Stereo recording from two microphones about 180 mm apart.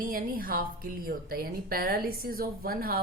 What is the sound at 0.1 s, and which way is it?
A woman's voice, 55° right (ahead or behind).